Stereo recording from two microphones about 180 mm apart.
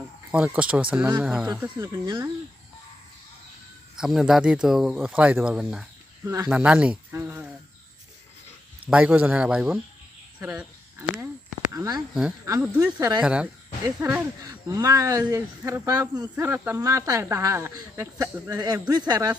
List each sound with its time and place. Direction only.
0.3 s speech: 5° right (ahead or behind)
3.9 s speech: centre (ahead or behind)
8.9 s speech: 5° right (ahead or behind)
10.4 s a sound: 10° right (ahead or behind)
11.7 s speech: 20° right (ahead or behind)
12.6 s speech: 10° right (ahead or behind)
12.9 s speech: 20° right (ahead or behind)
13.1 s speech: 5° right (ahead or behind); by 19.3 s 20° right (ahead or behind)